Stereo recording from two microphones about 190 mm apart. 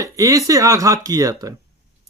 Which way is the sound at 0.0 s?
20° right (ahead or behind).